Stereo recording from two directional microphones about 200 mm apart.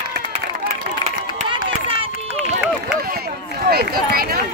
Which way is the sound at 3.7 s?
50° right (ahead or behind).